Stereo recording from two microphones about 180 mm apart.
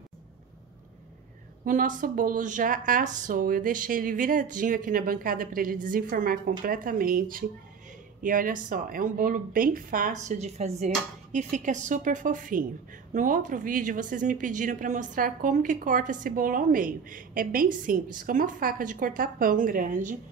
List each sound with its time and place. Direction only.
1.6 s a woman's voice: 50° right (ahead or behind)